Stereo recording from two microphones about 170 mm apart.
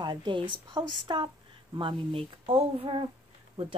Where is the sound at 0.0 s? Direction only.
25° right (ahead or behind).